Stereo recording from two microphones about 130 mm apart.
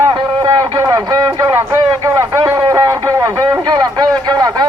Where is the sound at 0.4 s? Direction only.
30° right (ahead or behind).